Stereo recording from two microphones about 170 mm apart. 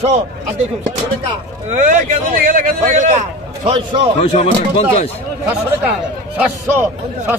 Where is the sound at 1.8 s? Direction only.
45° right (ahead or behind).